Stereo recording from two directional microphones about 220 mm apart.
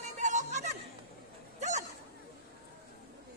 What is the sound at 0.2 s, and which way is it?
Chatter, 35° right (ahead or behind).